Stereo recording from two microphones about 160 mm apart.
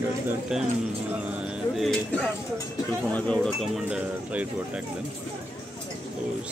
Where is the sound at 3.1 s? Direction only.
5° left (ahead or behind).